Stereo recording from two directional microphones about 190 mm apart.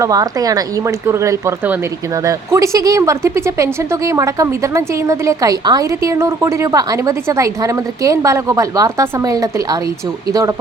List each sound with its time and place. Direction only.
0.0 s speech: 20° right (ahead or behind)